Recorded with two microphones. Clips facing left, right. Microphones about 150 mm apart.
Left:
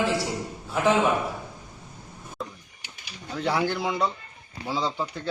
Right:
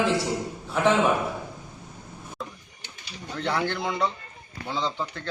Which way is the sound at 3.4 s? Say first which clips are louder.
Left 2 dB; 5° left (ahead or behind).